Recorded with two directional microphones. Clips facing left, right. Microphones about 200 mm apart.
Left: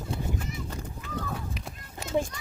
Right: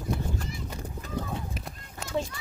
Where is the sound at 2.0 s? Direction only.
20° left (ahead or behind).